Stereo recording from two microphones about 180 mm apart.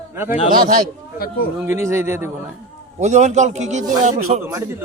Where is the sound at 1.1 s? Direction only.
55° left (ahead or behind).